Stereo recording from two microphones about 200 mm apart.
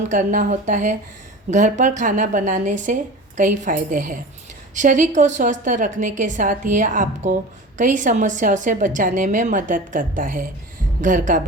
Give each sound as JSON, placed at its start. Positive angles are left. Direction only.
{"t": 0.1, "sound": "a woman's voice", "side_deg": -40}